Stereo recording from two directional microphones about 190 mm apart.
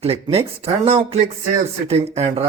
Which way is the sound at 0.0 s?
30° right (ahead or behind).